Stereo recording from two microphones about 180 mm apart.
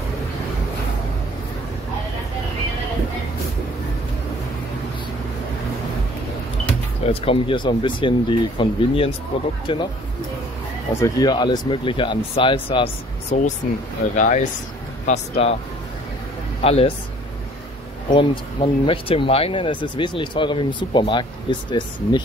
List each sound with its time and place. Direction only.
7.1 s speech: 30° left (ahead or behind)
10.9 s speech: 20° left (ahead or behind)
14.1 s speech: 45° left (ahead or behind)
16.6 s speech: 35° left (ahead or behind)
18.1 s speech: 30° left (ahead or behind)